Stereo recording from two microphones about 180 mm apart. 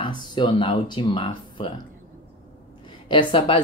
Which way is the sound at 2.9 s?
25° left (ahead or behind).